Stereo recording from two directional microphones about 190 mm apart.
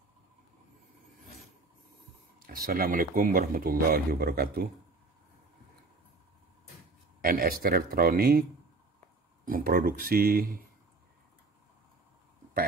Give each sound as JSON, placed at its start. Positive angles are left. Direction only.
{"t": 2.4, "sound": "speech", "side_deg": -50}
{"t": 7.2, "sound": "speech", "side_deg": -50}